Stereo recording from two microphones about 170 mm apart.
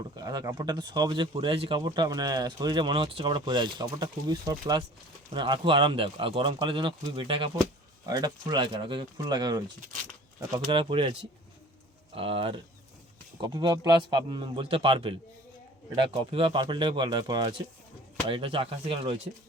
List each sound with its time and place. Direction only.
0.0 s speech: 20° right (ahead or behind)
10.7 s speech: 30° right (ahead or behind)